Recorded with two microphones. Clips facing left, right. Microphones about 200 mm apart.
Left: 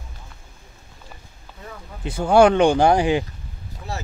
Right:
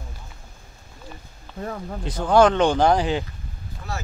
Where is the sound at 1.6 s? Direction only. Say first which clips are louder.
Right 9 dB; 50° right (ahead or behind).